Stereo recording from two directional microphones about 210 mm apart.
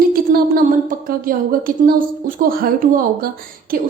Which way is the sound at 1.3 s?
40° right (ahead or behind).